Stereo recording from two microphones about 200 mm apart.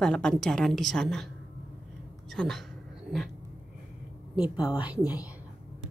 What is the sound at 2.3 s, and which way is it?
Speech, centre (ahead or behind).